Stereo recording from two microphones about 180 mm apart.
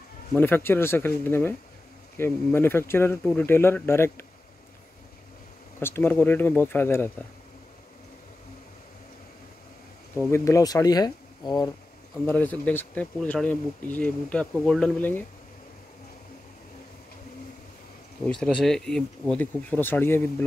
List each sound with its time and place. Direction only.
0.3 s speech: 10° left (ahead or behind)
5.8 s speech: 15° left (ahead or behind)
10.1 s speech: 15° left (ahead or behind)
12.3 s speech: 10° left (ahead or behind)
18.2 s speech: 5° left (ahead or behind)